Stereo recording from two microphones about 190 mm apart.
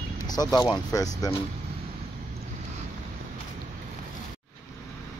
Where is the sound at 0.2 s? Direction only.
20° left (ahead or behind).